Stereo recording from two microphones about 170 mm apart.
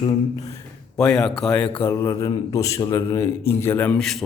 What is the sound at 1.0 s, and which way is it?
Speech, 5° left (ahead or behind).